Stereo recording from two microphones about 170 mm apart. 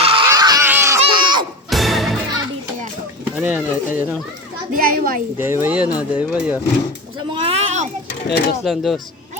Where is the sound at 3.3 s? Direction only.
5° right (ahead or behind).